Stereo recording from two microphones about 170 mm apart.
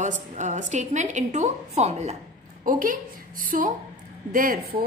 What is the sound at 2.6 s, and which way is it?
A woman's voice, 55° right (ahead or behind).